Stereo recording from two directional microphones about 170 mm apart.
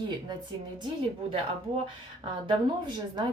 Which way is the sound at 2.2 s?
25° right (ahead or behind).